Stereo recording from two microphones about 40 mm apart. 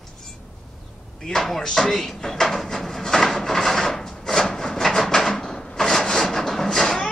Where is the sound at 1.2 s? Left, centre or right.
Centre.